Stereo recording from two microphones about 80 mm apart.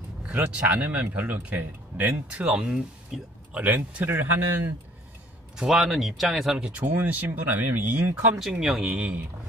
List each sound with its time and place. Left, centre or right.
0.2 s a man's voice: centre
3.1 s speech: centre
3.5 s a man's voice: right
5.6 s speech: centre
6.8 s a man's voice: right
8.4 s speech: centre
8.9 s a man's voice: centre